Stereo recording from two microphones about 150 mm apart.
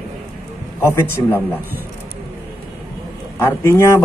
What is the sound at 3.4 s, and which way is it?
Speech, 20° left (ahead or behind).